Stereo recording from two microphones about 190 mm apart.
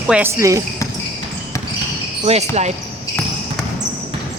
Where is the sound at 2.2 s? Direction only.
35° right (ahead or behind).